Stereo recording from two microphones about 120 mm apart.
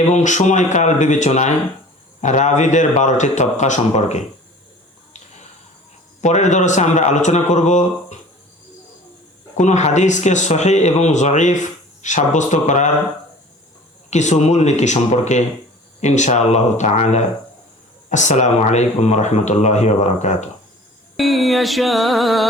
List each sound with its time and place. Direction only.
0.1 s a man's voice: 85° left
6.2 s a man's voice: 80° left
9.6 s speech: 75° left (ahead or behind)
14.1 s speech: 75° left (ahead or behind)
18.1 s speech: 85° left
21.2 s music: centre (ahead or behind)